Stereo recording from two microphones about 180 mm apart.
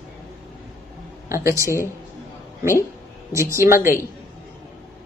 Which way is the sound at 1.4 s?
15° right (ahead or behind).